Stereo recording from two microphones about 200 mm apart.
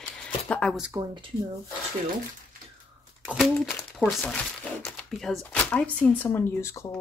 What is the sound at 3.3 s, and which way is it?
Speech, 5° right (ahead or behind).